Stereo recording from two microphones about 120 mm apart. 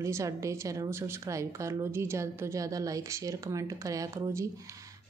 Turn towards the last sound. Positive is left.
turn(degrees=-30)  # may be behind; listen again after turning